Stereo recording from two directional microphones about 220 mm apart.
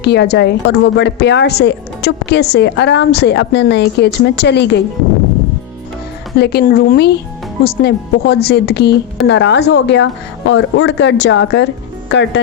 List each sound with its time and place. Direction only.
0.0 s a woman's voice: 50° left (ahead or behind)
6.4 s a woman's voice: 45° left (ahead or behind)